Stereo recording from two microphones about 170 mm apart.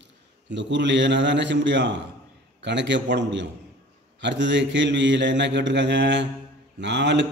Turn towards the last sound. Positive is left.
turn(degrees=-90)